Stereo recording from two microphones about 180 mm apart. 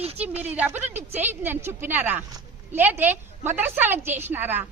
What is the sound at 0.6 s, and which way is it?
Speech, 10° right (ahead or behind).